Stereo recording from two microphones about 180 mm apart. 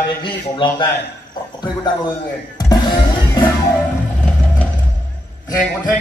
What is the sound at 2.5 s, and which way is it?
Music, 25° left (ahead or behind).